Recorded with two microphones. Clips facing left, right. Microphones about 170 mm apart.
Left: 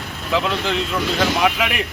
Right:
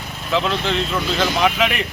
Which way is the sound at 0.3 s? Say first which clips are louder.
Even; 10° left (ahead or behind).